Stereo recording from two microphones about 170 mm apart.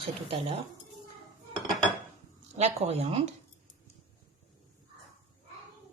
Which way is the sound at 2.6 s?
40° right (ahead or behind).